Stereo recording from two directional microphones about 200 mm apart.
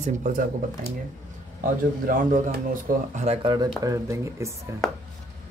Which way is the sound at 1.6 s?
45° right (ahead or behind).